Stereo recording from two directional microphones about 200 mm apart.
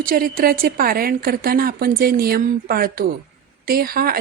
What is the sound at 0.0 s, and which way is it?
Speech, 45° right (ahead or behind).